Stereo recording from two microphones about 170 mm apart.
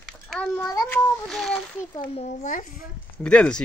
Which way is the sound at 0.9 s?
5° left (ahead or behind).